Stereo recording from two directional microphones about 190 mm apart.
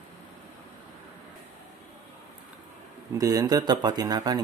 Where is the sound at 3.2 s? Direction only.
20° right (ahead or behind).